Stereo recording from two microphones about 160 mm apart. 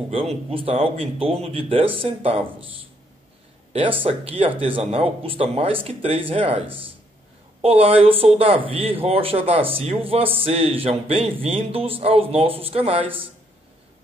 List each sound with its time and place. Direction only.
0.1 s speech: 35° right (ahead or behind)
3.7 s speech: 35° right (ahead or behind)